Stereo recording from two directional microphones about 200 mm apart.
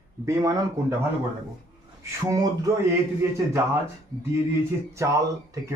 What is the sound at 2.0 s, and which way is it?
Speech, 15° right (ahead or behind).